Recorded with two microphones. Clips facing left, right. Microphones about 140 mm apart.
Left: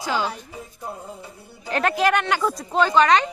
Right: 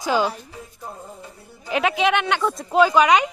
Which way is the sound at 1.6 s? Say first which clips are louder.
Even; 5° right (ahead or behind).